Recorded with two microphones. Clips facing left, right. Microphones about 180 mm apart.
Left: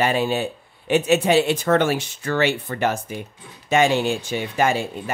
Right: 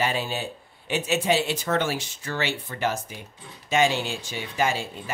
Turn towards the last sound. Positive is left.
turn(degrees=55)  # may be behind; listen again after turning